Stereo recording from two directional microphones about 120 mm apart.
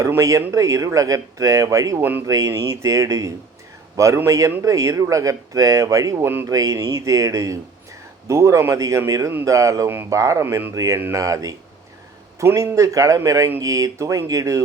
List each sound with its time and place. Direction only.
0.0 s speech: 25° right (ahead or behind)